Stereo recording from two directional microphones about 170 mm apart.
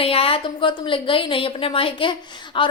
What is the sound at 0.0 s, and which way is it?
A woman's voice, 35° left (ahead or behind).